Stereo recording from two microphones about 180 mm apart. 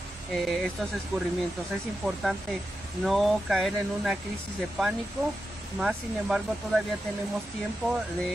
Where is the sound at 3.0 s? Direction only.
Centre (ahead or behind).